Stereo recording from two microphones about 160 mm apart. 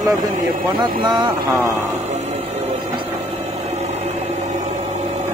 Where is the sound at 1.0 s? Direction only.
25° right (ahead or behind).